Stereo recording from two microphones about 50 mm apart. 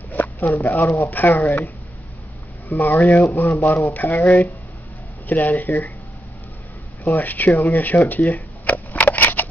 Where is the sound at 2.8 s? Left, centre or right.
Left.